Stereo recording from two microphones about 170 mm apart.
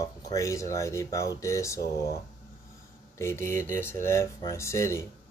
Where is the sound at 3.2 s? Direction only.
15° left (ahead or behind).